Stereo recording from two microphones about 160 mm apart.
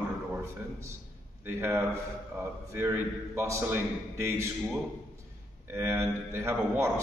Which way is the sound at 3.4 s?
15° right (ahead or behind).